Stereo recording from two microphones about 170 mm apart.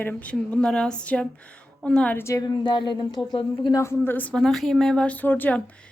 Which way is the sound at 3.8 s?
15° left (ahead or behind).